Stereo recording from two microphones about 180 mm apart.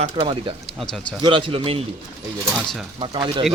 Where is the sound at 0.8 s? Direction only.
5° left (ahead or behind).